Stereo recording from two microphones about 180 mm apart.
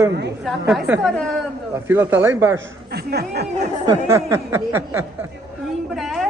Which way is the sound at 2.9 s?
65° right (ahead or behind).